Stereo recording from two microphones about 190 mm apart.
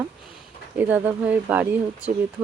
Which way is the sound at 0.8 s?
10° right (ahead or behind).